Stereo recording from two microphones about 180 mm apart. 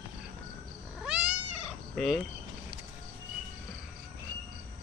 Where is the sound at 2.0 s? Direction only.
Centre (ahead or behind).